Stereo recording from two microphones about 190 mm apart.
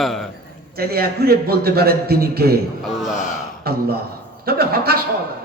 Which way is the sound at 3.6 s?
55° right (ahead or behind).